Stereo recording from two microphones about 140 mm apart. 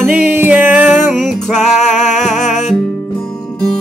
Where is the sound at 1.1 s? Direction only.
Centre (ahead or behind).